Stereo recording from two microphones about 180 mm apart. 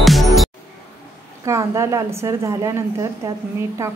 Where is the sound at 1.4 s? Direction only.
15° right (ahead or behind).